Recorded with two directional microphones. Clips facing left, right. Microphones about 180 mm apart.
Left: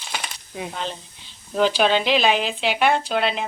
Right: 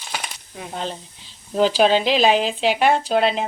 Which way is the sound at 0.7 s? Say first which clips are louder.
Right 2 dB; 40° right (ahead or behind).